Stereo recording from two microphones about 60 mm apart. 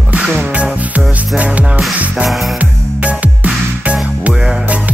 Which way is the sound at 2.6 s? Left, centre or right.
Right.